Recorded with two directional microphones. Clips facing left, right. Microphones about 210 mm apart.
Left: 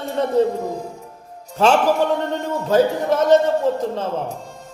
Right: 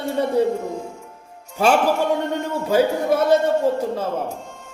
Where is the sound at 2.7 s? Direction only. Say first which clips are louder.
Left 1 dB; 10° right (ahead or behind).